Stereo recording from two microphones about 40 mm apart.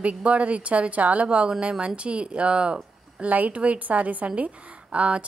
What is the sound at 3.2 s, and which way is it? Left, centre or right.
A woman's voice, right.